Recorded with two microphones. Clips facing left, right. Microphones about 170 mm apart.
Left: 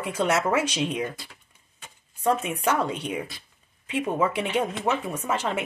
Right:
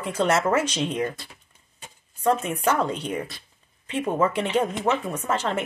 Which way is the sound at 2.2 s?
5° left (ahead or behind).